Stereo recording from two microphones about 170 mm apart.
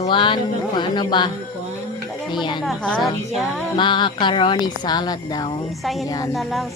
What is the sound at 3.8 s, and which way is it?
Speech, 30° left (ahead or behind).